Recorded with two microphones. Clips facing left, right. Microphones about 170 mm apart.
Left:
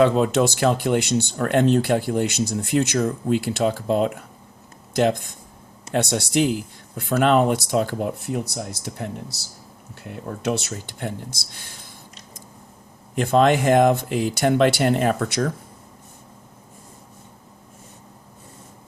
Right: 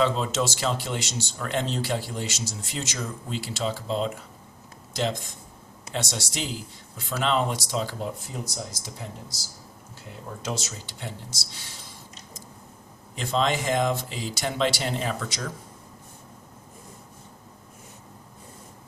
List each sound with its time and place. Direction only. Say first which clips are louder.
0.0 s speech: left 7 dB; 55° left (ahead or behind)
13.1 s speech: left 8 dB; 55° left (ahead or behind)